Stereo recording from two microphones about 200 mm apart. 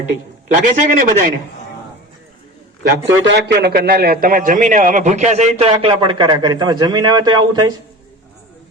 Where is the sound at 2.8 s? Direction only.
55° right (ahead or behind); by 7.7 s 20° right (ahead or behind).